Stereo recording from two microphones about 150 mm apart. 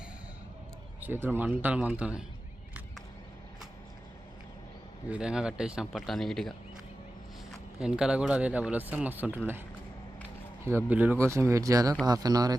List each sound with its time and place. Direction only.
1.0 s speech: 15° right (ahead or behind)
5.1 s speech: 5° right (ahead or behind)
7.8 s speech: 5° right (ahead or behind); by 12.5 s 25° right (ahead or behind)